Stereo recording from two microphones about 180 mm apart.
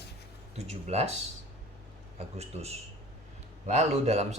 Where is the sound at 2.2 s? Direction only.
35° right (ahead or behind).